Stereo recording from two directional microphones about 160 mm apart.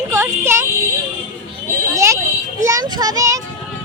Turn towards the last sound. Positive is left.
turn(degrees=-20)  # may be behind; listen again after turning